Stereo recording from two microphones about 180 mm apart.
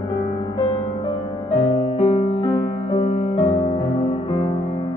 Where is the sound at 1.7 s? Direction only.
35° left (ahead or behind).